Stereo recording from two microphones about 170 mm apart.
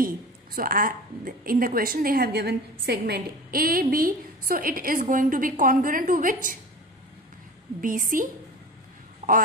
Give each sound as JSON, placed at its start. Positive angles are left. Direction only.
{"t": 0.0, "sound": "a woman's voice", "side_deg": -55}
{"t": 7.8, "sound": "a woman's voice", "side_deg": -50}
{"t": 9.2, "sound": "quack", "side_deg": -45}